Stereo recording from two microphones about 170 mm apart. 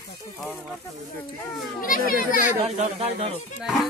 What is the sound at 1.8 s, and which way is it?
Speech, 55° left (ahead or behind).